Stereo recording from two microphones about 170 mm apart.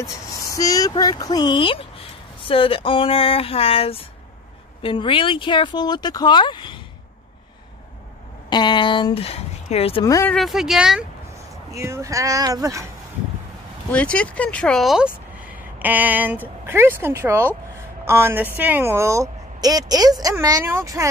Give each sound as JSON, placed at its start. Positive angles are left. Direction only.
{"t": 0.0, "sound": "speech", "side_deg": 20}
{"t": 8.5, "sound": "speech", "side_deg": 25}
{"t": 10.0, "sound": "speech", "side_deg": 20}
{"t": 10.3, "sound": "speech", "side_deg": 0}
{"t": 11.7, "sound": "a woman's voice", "side_deg": -15}
{"t": 13.9, "sound": "a woman's voice", "side_deg": 5}